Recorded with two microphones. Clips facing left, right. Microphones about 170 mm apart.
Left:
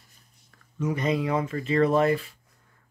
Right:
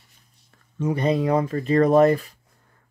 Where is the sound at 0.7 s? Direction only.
30° right (ahead or behind).